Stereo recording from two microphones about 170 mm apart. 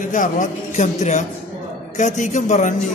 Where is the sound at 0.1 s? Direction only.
45° left (ahead or behind).